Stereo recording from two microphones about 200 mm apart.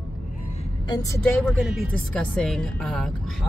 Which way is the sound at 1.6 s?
Centre (ahead or behind).